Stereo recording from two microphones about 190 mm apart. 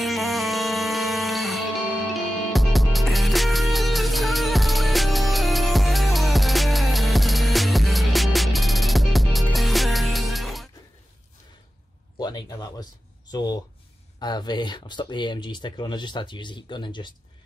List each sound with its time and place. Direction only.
0.0 s music: centre (ahead or behind)
12.2 s a sound: 20° left (ahead or behind)
13.3 s speech: 20° left (ahead or behind)